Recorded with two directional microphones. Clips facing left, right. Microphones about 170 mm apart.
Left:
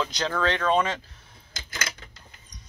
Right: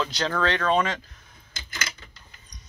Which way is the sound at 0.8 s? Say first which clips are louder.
Even; 30° left (ahead or behind).